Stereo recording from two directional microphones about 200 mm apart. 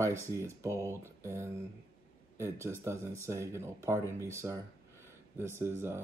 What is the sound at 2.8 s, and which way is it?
Speech, 15° right (ahead or behind).